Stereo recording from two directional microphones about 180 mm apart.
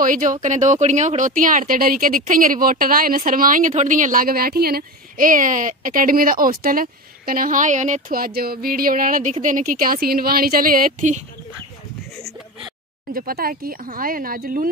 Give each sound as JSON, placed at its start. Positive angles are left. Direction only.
{"t": 0.0, "sound": "speech", "side_deg": -45}
{"t": 13.1, "sound": "speech", "side_deg": -55}